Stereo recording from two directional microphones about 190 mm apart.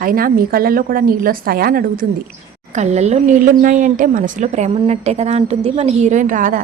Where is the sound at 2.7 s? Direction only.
35° right (ahead or behind).